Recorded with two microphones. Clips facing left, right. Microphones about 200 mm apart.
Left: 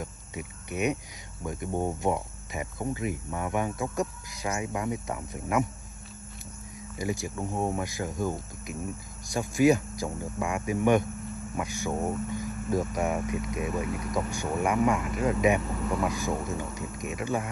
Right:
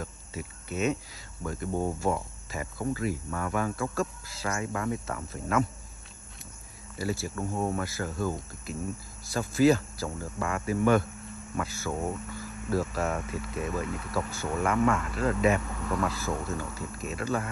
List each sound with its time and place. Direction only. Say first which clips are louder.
0.0 s a sound: left 1 dB; 15° left (ahead or behind)
1.4 s speech: even; 20° left (ahead or behind)
7.0 s speech: even; 15° left (ahead or behind)